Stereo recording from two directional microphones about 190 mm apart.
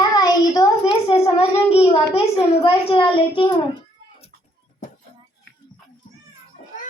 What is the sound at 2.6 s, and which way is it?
Speech, 30° left (ahead or behind).